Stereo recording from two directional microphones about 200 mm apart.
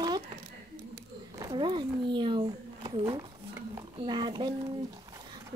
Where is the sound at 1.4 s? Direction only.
20° right (ahead or behind).